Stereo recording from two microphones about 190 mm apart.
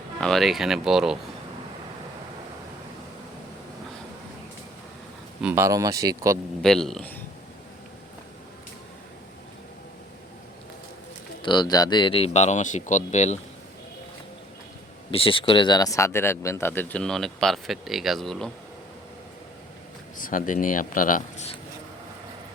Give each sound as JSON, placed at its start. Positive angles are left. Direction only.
{"t": 0.2, "sound": "speech", "side_deg": 0}
{"t": 5.4, "sound": "speech", "side_deg": -10}
{"t": 6.6, "sound": "speech", "side_deg": 0}
{"t": 11.4, "sound": "speech", "side_deg": 25}
{"t": 15.1, "sound": "speech", "side_deg": 30}
{"t": 20.1, "sound": "speech", "side_deg": 45}